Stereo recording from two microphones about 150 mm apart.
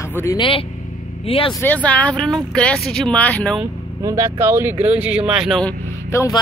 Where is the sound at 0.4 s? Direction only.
35° left (ahead or behind).